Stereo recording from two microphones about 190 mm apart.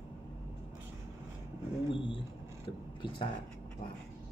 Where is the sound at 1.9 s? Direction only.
25° left (ahead or behind).